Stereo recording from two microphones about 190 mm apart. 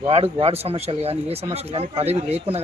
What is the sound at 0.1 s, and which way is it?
Speech, 30° right (ahead or behind).